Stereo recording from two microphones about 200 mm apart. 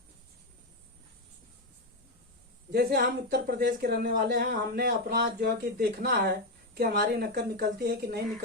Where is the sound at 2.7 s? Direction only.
50° right (ahead or behind).